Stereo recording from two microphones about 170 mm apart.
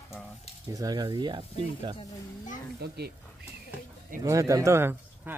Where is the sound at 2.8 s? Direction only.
65° right (ahead or behind).